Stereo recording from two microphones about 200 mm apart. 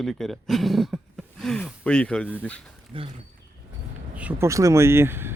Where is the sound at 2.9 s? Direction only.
25° right (ahead or behind).